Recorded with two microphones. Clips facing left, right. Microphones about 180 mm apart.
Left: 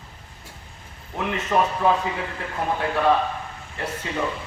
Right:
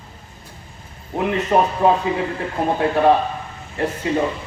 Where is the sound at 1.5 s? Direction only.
30° right (ahead or behind).